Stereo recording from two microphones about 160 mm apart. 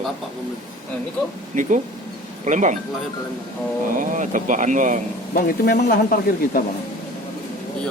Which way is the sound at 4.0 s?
55° right (ahead or behind).